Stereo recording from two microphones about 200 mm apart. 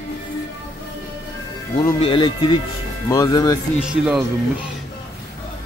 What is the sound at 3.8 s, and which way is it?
Speech, 5° right (ahead or behind).